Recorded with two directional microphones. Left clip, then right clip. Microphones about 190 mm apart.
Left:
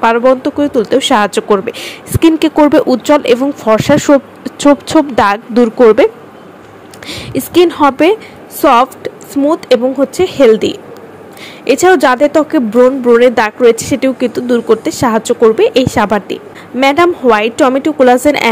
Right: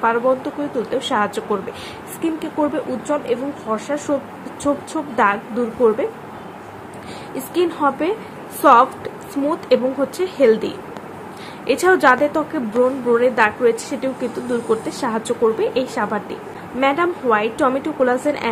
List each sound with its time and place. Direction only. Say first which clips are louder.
0.0 s speech: left 9 dB; 40° left (ahead or behind)
5.1 s speech: left 8 dB; 50° left (ahead or behind)
7.5 s speech: left 10 dB; 40° left (ahead or behind)